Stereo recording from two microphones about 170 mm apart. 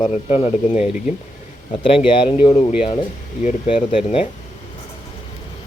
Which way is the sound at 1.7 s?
30° left (ahead or behind).